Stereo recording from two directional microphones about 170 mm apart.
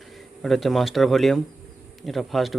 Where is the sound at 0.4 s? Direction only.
Centre (ahead or behind).